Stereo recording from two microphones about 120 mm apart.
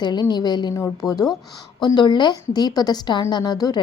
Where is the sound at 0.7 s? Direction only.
25° left (ahead or behind).